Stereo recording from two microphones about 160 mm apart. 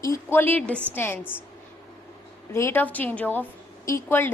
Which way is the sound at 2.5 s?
15° left (ahead or behind).